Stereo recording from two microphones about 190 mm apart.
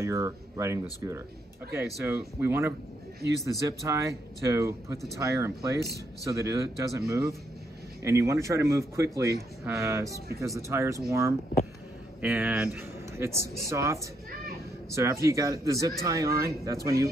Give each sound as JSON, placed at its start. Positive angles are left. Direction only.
{"t": 0.0, "sound": "speech", "side_deg": -15}
{"t": 15.0, "sound": "speech", "side_deg": -15}